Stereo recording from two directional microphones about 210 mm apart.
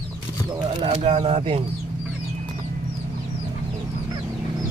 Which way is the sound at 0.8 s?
30° right (ahead or behind).